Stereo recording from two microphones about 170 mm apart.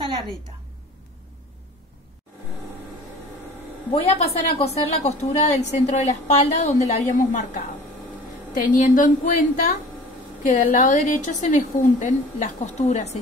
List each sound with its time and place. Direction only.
3.9 s a woman's voice: 35° left (ahead or behind)